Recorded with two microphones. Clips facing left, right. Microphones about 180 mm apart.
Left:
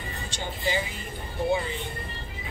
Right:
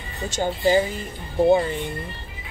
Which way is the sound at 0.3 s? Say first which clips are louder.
Right 11 dB; 45° right (ahead or behind).